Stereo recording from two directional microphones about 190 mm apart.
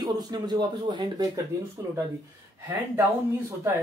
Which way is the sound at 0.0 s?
20° right (ahead or behind).